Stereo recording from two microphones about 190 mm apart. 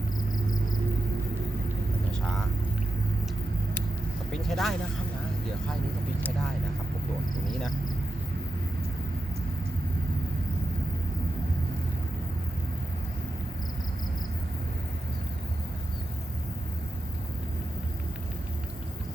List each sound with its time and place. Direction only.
4.3 s speech: centre (ahead or behind)